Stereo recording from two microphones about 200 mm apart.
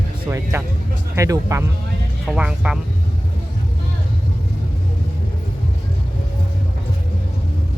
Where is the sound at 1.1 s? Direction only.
15° right (ahead or behind).